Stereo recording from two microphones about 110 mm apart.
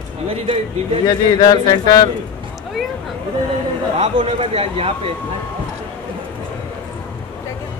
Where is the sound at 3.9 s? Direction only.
60° right (ahead or behind).